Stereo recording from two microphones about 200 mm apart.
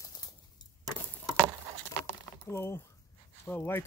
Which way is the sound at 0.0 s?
20° left (ahead or behind).